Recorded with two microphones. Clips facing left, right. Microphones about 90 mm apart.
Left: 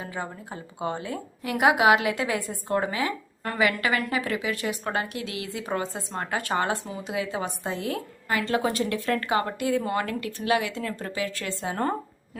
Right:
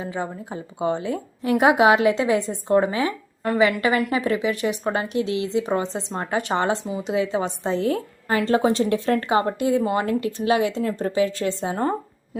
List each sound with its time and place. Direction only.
0.0 s a woman's voice: 20° right (ahead or behind)